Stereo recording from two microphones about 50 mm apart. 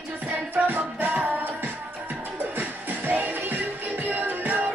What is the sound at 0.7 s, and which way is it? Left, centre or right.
Music, right.